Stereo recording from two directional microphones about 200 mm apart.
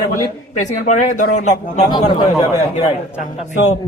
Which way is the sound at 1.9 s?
20° left (ahead or behind).